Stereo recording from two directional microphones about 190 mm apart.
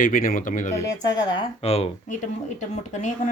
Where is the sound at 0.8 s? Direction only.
20° left (ahead or behind).